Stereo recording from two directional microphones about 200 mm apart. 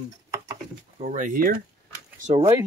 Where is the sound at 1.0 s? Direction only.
35° right (ahead or behind).